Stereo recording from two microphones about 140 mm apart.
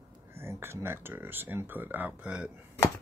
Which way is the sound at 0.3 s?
15° right (ahead or behind).